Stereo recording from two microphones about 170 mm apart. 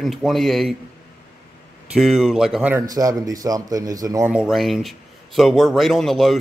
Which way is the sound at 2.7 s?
20° right (ahead or behind).